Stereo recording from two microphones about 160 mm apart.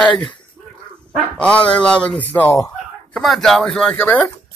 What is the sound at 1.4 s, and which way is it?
Speech, 5° left (ahead or behind).